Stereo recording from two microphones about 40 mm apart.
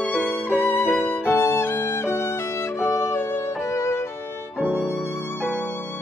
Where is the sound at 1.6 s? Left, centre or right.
Left.